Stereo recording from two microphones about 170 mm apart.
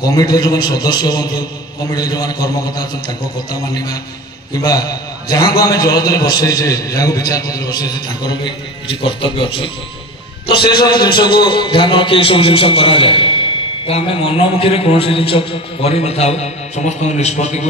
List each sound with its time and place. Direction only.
0.0 s a man's voice: 20° left (ahead or behind)
10.7 s a man's voice: 25° left (ahead or behind); by 17.6 s 40° left (ahead or behind)